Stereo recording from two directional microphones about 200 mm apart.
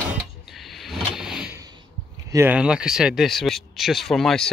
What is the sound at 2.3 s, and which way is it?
Speech, 10° right (ahead or behind).